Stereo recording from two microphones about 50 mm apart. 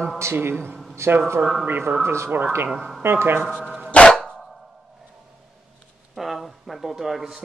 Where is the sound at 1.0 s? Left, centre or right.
Right.